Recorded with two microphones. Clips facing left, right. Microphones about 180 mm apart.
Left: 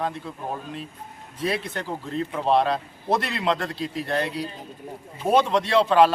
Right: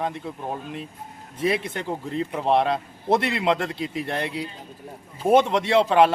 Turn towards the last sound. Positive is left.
turn(degrees=-20)  # may be behind; listen again after turning